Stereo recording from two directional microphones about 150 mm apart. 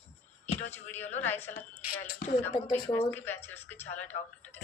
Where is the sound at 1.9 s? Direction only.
90° left.